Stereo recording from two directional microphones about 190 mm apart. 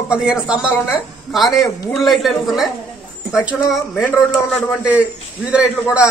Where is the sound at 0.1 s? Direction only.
5° right (ahead or behind).